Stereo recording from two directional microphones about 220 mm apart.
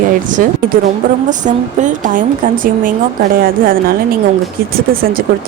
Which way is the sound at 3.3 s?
40° right (ahead or behind).